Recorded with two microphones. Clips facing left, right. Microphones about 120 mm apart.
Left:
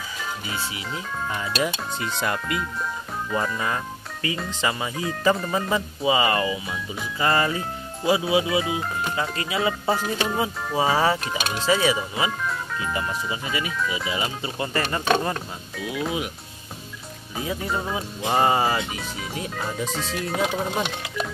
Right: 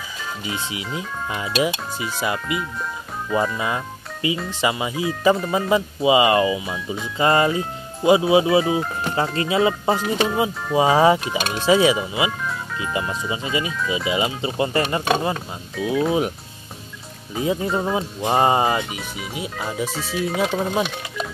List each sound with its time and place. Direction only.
0.5 s speech: 20° right (ahead or behind)
1.5 s speech: 5° right (ahead or behind)
5.7 s speech: 15° right (ahead or behind)
11.2 s speech: centre (ahead or behind)
11.5 s speech: 10° right (ahead or behind)
17.4 s speech: 25° right (ahead or behind)
17.6 s speech: 5° right (ahead or behind)
17.9 s speech: 25° right (ahead or behind)
18.9 s speech: 5° right (ahead or behind)